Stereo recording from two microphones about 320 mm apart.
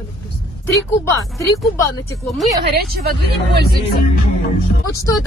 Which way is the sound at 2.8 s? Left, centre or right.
Right.